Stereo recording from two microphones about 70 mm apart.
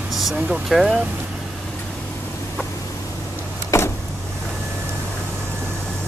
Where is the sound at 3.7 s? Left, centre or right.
Left.